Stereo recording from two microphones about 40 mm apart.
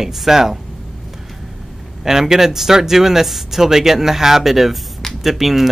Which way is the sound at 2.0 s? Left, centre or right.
Centre.